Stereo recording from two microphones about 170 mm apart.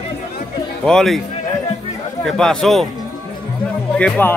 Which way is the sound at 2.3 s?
5° left (ahead or behind).